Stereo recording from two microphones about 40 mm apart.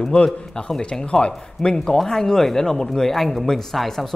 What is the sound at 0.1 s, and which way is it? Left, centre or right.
Speech, left.